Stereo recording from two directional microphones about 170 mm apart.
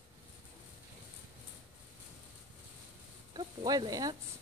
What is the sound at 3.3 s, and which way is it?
Snake, 25° right (ahead or behind).